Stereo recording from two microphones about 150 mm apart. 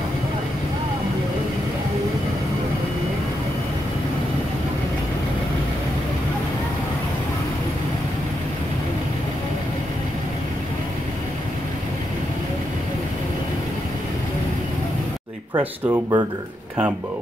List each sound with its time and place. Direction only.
15.5 s speech: 25° right (ahead or behind)